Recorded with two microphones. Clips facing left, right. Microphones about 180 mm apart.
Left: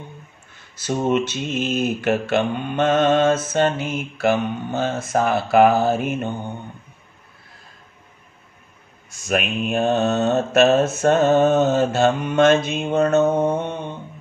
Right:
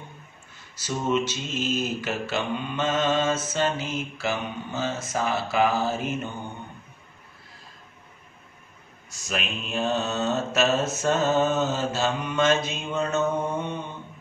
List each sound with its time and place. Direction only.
0.7 s mantra: 55° left (ahead or behind)
9.1 s mantra: 55° left (ahead or behind)